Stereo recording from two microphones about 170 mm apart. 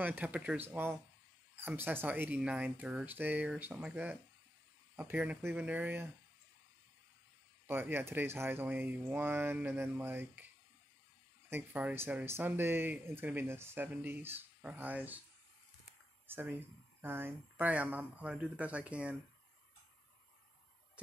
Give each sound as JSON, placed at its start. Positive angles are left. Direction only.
{"t": 0.0, "sound": "speech", "side_deg": -10}
{"t": 7.6, "sound": "speech", "side_deg": -15}
{"t": 16.3, "sound": "speech", "side_deg": -10}